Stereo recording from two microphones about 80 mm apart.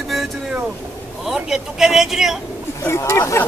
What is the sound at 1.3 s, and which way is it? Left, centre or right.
Speech, centre.